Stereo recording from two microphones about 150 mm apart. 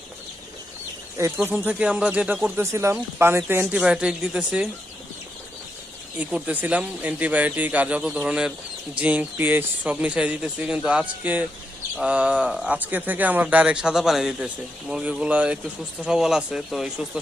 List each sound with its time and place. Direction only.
1.4 s speech: 10° right (ahead or behind)
6.1 s speech: 10° right (ahead or behind)